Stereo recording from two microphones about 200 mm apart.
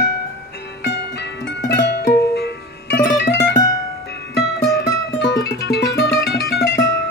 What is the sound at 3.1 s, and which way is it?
Music, 60° left (ahead or behind).